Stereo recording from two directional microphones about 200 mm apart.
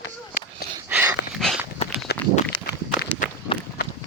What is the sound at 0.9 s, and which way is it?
Dog, 10° right (ahead or behind).